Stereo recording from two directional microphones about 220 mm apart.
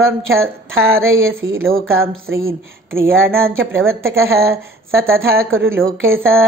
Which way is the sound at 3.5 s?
65° right (ahead or behind).